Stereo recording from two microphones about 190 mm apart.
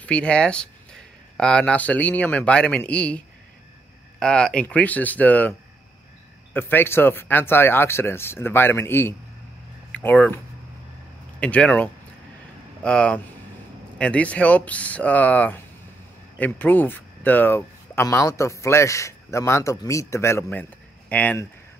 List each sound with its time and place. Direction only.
0.0 s speech: 5° left (ahead or behind)